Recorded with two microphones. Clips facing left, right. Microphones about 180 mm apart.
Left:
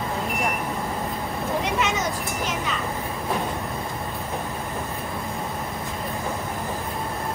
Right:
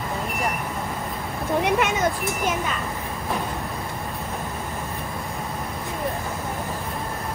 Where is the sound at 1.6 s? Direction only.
55° right (ahead or behind).